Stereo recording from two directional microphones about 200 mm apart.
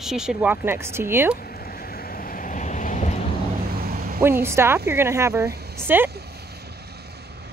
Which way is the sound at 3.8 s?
45° right (ahead or behind).